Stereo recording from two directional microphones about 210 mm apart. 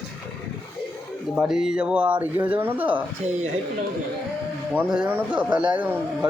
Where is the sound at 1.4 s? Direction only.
Centre (ahead or behind).